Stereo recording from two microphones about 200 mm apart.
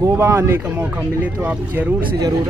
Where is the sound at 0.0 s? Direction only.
15° right (ahead or behind).